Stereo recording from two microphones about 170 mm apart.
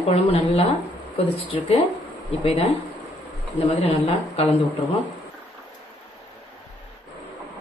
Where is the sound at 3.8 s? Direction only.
35° left (ahead or behind).